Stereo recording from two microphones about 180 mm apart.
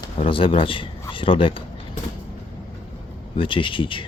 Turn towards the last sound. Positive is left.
turn(degrees=30)  # may be behind; listen again after turning